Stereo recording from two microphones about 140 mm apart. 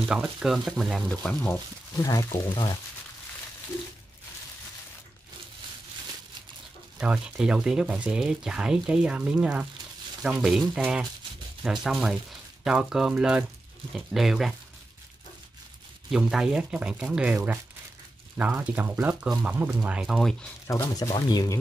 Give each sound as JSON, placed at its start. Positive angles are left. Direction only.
{"t": 0.1, "sound": "speech", "side_deg": -5}
{"t": 2.0, "sound": "speech", "side_deg": 25}
{"t": 7.0, "sound": "speech", "side_deg": -5}
{"t": 16.1, "sound": "speech", "side_deg": -5}
{"t": 18.4, "sound": "speech", "side_deg": -10}
{"t": 20.6, "sound": "speech", "side_deg": 20}